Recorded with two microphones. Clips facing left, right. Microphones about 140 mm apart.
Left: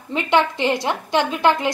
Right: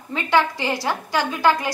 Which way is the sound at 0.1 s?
20° left (ahead or behind).